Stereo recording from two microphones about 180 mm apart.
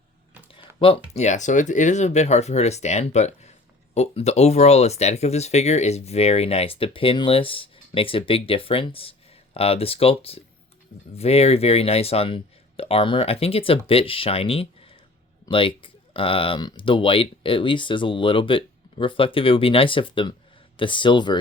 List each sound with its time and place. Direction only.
0.8 s speech: 35° left (ahead or behind)